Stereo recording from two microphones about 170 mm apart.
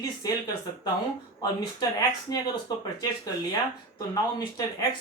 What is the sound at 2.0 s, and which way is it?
Speech, 25° left (ahead or behind).